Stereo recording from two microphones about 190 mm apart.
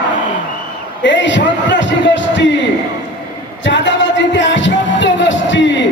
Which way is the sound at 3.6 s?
70° left (ahead or behind).